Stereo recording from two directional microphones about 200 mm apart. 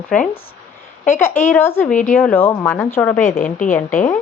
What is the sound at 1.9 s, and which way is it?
Speech, 40° left (ahead or behind).